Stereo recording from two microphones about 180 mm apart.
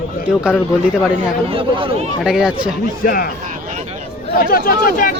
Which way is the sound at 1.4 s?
30° right (ahead or behind).